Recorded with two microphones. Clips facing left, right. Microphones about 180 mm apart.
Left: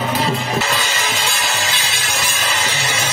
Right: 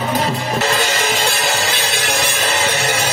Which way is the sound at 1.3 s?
60° right (ahead or behind).